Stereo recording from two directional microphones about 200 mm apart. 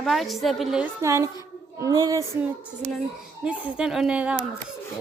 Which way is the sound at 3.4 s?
5° right (ahead or behind).